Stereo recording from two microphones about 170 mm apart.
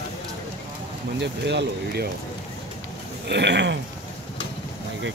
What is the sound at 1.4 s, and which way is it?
Speech, 80° right.